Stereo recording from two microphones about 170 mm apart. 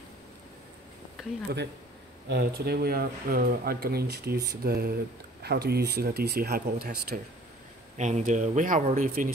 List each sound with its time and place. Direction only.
2.2 s speech: 70° right (ahead or behind)
8.0 s speech: 45° right (ahead or behind)